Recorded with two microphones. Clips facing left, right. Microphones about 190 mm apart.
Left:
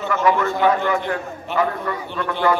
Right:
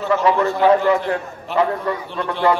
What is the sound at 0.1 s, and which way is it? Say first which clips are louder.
A man's voice: right 2 dB; 35° right (ahead or behind).